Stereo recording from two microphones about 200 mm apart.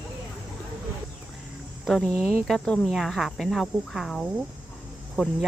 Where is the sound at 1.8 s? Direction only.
Centre (ahead or behind).